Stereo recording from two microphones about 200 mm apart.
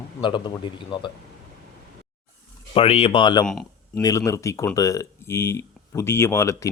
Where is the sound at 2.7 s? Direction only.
30° left (ahead or behind).